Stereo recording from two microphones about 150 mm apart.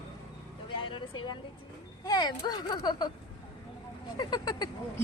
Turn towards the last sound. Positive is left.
turn(degrees=25)  # may be behind; listen again after turning